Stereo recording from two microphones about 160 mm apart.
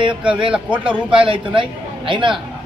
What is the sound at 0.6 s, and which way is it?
Speech, 5° right (ahead or behind).